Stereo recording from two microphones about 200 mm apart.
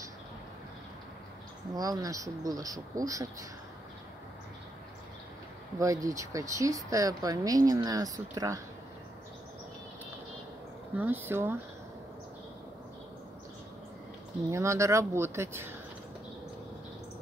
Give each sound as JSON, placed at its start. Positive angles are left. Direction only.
{"t": 1.8, "sound": "speech", "side_deg": -20}
{"t": 5.8, "sound": "speech", "side_deg": -15}
{"t": 11.0, "sound": "speech", "side_deg": -10}
{"t": 14.5, "sound": "speech", "side_deg": -15}